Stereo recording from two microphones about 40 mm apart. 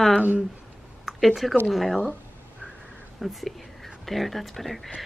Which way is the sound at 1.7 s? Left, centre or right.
Centre.